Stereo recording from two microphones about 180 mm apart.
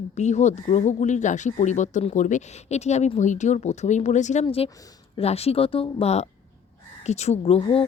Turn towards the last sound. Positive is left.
turn(degrees=30)  # may be behind; listen again after turning